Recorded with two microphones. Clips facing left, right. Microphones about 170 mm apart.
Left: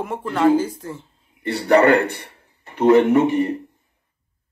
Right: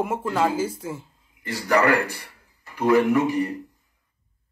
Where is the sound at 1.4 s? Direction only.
30° left (ahead or behind).